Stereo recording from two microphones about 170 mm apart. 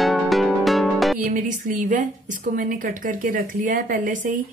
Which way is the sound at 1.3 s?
50° right (ahead or behind).